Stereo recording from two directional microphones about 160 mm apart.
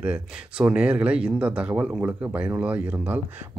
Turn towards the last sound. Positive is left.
turn(degrees=-10)  # may be behind; listen again after turning